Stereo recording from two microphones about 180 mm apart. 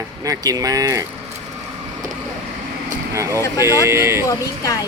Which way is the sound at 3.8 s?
15° right (ahead or behind).